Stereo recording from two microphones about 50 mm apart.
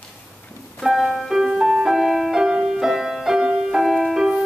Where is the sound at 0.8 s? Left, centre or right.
Centre.